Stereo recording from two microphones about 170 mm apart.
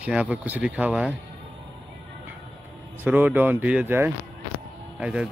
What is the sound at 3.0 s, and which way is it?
Speech, 10° right (ahead or behind).